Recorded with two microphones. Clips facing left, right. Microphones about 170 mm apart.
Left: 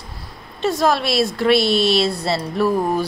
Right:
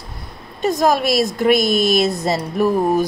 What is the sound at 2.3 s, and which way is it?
Speech, 15° right (ahead or behind).